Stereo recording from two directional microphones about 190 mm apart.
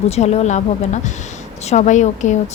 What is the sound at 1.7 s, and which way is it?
Speech, 40° left (ahead or behind).